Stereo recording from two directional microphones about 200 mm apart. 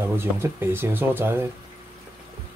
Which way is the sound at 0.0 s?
10° right (ahead or behind).